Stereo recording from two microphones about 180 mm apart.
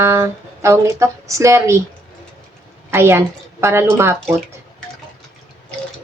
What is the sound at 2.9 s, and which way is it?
Speech, 15° right (ahead or behind).